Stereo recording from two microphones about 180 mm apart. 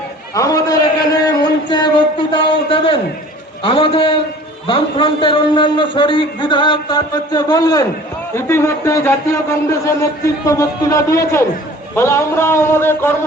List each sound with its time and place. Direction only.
0.3 s a man's voice: 20° left (ahead or behind)
1.2 s a sound: 20° left (ahead or behind)
3.6 s a man's voice: 30° left (ahead or behind); by 13.1 s 15° left (ahead or behind)